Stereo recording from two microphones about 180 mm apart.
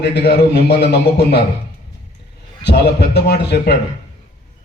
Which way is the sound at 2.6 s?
70° left (ahead or behind).